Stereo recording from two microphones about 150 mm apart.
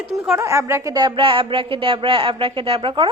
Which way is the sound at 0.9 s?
35° right (ahead or behind).